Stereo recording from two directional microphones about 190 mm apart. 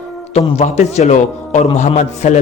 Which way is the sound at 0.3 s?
35° left (ahead or behind).